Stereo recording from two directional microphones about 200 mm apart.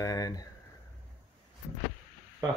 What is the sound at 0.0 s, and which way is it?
Speech, 20° left (ahead or behind).